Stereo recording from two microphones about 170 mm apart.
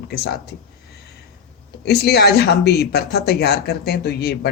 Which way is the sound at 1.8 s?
70° left (ahead or behind).